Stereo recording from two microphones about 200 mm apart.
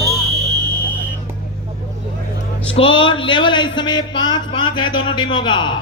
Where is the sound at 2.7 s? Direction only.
25° left (ahead or behind).